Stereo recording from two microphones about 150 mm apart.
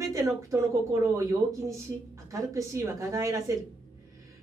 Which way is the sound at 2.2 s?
20° right (ahead or behind).